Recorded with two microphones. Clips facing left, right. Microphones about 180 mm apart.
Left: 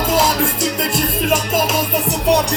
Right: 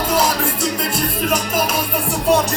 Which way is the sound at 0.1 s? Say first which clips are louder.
Left 2 dB; 25° left (ahead or behind).